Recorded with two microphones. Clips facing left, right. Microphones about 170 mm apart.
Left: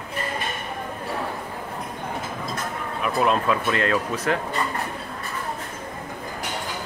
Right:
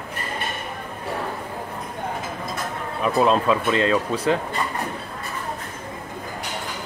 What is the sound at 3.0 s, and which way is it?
Speech, 25° right (ahead or behind).